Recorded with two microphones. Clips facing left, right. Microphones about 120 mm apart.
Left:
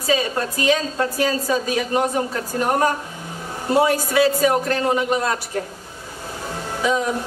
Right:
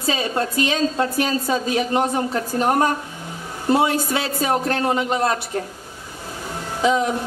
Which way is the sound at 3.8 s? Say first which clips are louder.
Left 5 dB; 25° right (ahead or behind).